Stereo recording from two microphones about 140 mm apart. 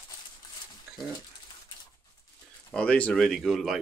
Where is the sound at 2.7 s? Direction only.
10° left (ahead or behind).